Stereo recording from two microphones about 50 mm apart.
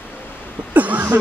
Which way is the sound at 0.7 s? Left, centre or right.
Right.